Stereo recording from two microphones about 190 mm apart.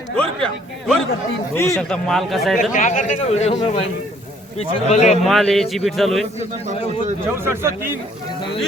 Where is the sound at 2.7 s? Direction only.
40° left (ahead or behind).